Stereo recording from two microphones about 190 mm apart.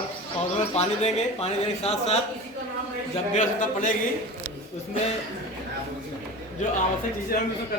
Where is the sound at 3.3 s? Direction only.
40° left (ahead or behind).